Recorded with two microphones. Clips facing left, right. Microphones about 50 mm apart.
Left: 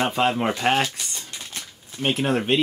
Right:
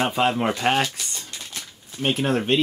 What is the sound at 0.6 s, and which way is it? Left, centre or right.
Speech, centre.